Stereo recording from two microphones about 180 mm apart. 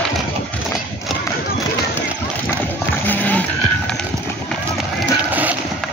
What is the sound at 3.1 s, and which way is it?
Music, 10° left (ahead or behind).